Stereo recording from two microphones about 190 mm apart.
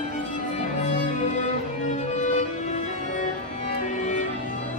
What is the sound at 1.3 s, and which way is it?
Music, 40° left (ahead or behind).